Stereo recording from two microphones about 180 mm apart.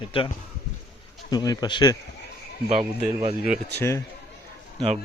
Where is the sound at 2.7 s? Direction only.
5° right (ahead or behind).